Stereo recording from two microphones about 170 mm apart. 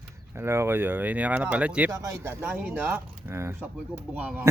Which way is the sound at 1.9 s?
20° right (ahead or behind).